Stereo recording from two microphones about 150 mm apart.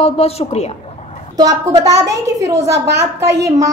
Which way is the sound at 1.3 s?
25° right (ahead or behind).